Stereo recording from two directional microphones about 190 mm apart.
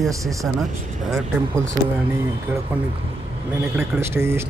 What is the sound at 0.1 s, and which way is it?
Speech, 15° right (ahead or behind).